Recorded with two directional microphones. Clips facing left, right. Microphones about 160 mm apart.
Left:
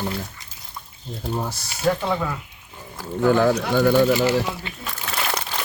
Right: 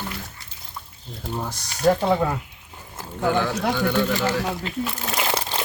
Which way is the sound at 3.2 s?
45° left (ahead or behind).